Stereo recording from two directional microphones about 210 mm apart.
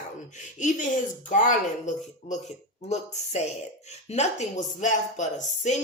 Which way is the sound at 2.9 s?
30° left (ahead or behind).